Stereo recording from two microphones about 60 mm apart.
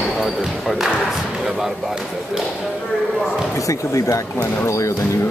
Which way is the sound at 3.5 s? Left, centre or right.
Left.